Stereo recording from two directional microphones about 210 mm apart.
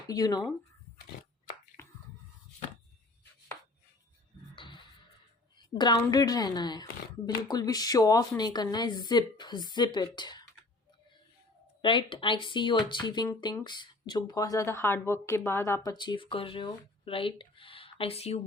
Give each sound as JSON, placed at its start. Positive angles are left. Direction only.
{"t": 0.1, "sound": "speech", "side_deg": 20}
{"t": 1.8, "sound": "finger snapping", "side_deg": 15}
{"t": 4.5, "sound": "music", "side_deg": 20}
{"t": 5.5, "sound": "speech", "side_deg": 20}
{"t": 11.8, "sound": "speech", "side_deg": 25}